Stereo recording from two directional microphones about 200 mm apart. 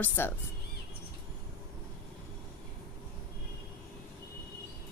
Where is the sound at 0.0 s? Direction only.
10° left (ahead or behind).